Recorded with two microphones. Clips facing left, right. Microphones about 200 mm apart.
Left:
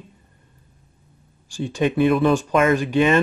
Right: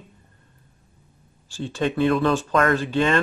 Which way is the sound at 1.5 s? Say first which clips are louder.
Left 3 dB; 15° left (ahead or behind).